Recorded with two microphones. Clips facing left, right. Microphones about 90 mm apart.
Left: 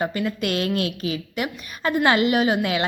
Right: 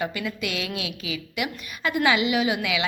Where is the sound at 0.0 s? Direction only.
35° left (ahead or behind).